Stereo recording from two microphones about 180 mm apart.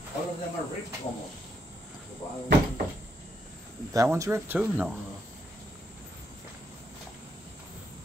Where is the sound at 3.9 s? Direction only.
20° right (ahead or behind).